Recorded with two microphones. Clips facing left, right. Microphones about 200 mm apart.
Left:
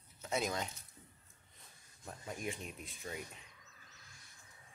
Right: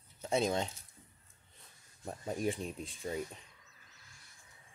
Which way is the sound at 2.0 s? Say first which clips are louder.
Right 8 dB; 35° right (ahead or behind).